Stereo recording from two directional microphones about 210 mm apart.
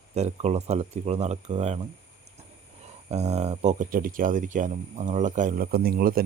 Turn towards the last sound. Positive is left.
turn(degrees=-45)  # may be behind; listen again after turning